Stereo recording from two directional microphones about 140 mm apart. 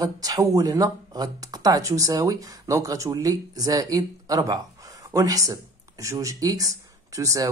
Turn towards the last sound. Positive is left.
turn(degrees=-25)  # may be behind; listen again after turning